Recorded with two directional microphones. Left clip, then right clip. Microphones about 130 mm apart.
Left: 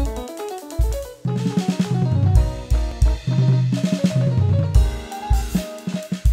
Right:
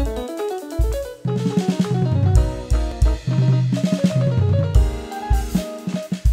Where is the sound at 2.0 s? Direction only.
50° right (ahead or behind).